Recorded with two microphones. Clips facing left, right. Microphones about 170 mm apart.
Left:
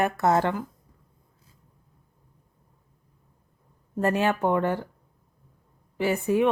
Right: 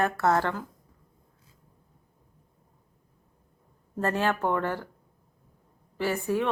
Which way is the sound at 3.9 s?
15° left (ahead or behind).